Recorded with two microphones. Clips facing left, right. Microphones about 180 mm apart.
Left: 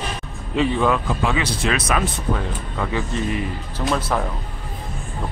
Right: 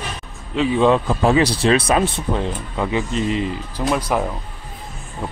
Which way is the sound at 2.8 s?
20° right (ahead or behind).